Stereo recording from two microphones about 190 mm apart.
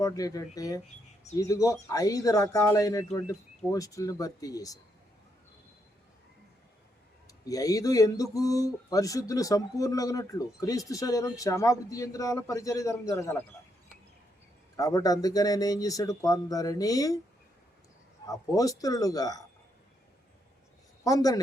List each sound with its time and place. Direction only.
0.0 s speech: 20° left (ahead or behind)
7.3 s speech: 20° left (ahead or behind)
14.8 s speech: 20° left (ahead or behind)
18.3 s speech: 20° left (ahead or behind)
21.0 s speech: 20° left (ahead or behind)